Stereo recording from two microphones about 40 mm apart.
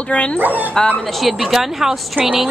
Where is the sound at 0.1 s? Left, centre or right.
Left.